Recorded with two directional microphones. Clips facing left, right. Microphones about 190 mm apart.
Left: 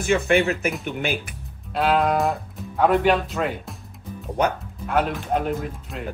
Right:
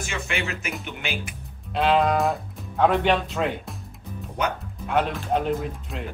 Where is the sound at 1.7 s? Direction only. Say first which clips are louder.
Even; 5° left (ahead or behind).